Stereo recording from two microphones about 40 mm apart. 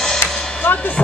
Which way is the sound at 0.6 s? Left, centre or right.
Left.